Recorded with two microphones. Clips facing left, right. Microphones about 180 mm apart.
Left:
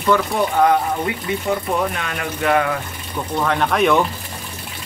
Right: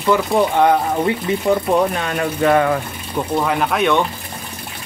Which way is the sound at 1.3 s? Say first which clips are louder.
Right 4 dB; 30° right (ahead or behind).